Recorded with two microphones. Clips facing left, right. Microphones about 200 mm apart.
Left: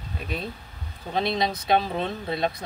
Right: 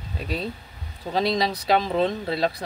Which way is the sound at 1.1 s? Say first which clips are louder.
Right 2 dB; 35° right (ahead or behind).